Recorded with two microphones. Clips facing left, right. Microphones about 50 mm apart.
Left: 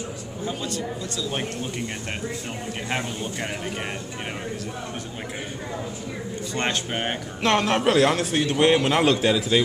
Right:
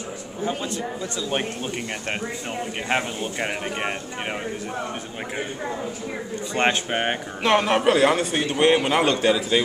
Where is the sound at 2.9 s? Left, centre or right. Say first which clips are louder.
Right 4 dB; right.